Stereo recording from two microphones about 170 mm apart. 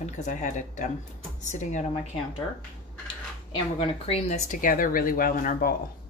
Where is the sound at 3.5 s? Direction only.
30° left (ahead or behind); by 5.8 s 55° left (ahead or behind).